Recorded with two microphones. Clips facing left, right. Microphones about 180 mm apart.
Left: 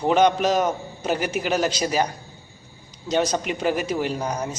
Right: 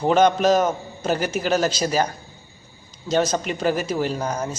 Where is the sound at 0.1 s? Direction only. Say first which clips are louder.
Right 2 dB; 10° left (ahead or behind).